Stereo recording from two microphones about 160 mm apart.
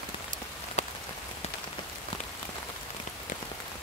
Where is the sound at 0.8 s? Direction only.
40° left (ahead or behind).